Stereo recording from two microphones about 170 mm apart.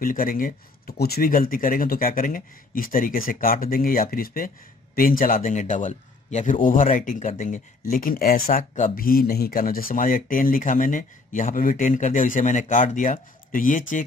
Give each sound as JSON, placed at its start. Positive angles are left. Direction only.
{"t": 0.0, "sound": "speech", "side_deg": 55}